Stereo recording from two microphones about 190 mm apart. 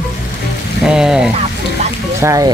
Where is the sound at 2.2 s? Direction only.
15° right (ahead or behind).